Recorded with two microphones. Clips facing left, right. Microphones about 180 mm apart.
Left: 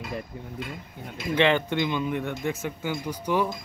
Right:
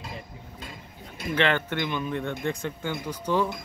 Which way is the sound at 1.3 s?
15° left (ahead or behind).